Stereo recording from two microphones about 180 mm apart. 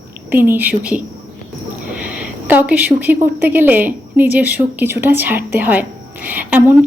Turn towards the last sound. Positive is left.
turn(degrees=-10)  # may be behind; listen again after turning